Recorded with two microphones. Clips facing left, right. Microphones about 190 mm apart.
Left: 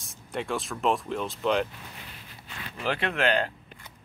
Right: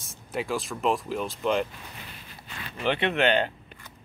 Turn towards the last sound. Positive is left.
turn(degrees=0)  # may be behind; listen again after turning